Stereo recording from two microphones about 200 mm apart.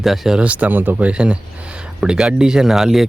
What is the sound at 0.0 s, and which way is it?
Speech, centre (ahead or behind).